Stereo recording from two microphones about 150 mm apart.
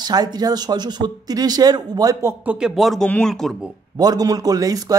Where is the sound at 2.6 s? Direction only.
5° right (ahead or behind).